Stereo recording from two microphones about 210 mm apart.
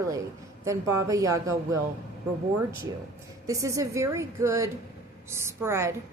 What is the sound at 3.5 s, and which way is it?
A woman's voice, 15° right (ahead or behind).